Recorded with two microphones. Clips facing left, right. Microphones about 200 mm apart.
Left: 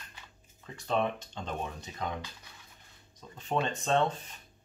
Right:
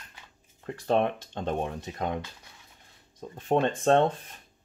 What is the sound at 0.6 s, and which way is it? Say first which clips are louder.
Speech: right 5 dB; 60° right (ahead or behind).